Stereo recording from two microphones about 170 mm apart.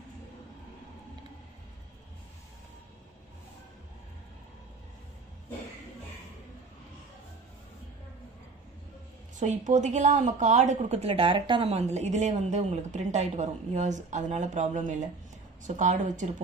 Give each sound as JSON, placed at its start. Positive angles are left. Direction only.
{"t": 9.4, "sound": "a woman's voice", "side_deg": -45}